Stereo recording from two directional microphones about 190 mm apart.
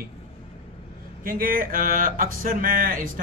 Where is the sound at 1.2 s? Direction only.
50° right (ahead or behind).